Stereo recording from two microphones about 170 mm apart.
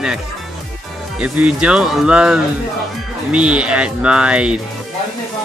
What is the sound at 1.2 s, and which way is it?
Speech, 5° right (ahead or behind).